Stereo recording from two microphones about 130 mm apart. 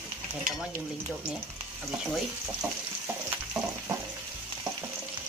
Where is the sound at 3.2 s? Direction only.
15° right (ahead or behind).